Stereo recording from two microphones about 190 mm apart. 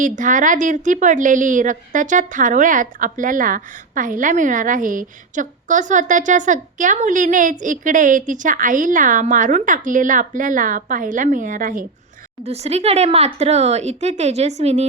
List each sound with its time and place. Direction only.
0.0 s a woman's voice: 45° right (ahead or behind)
12.5 s speech: 35° right (ahead or behind)